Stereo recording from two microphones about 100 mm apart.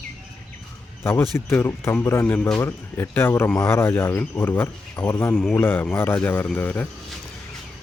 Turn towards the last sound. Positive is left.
turn(degrees=15)  # may be behind; listen again after turning